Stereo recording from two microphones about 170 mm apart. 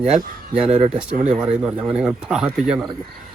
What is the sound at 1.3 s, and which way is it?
Speech, 5° right (ahead or behind).